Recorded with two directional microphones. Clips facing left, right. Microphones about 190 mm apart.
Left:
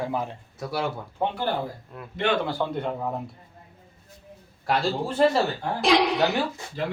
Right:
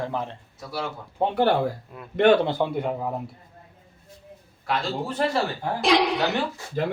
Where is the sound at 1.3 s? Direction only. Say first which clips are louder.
Right 7 dB; 75° right (ahead or behind).